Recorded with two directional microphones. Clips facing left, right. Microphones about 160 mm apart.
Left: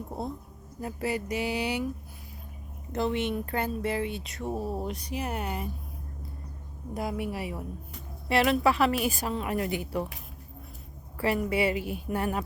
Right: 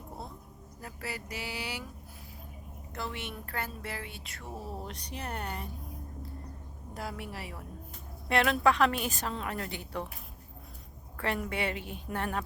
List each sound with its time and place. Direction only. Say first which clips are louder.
0.8 s speech: left 10 dB; 20° left (ahead or behind)
2.9 s speech: left 11 dB; 20° left (ahead or behind)
6.9 s a woman's voice: left 8 dB; 15° left (ahead or behind)
8.3 s a woman's voice: left 2 dB; 5° left (ahead or behind)
11.2 s a woman's voice: left 6 dB; 5° left (ahead or behind)